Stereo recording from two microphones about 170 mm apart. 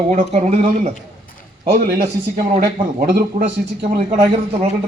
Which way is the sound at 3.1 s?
55° right (ahead or behind).